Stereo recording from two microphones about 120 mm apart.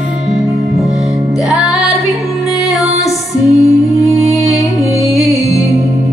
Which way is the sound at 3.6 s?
25° left (ahead or behind).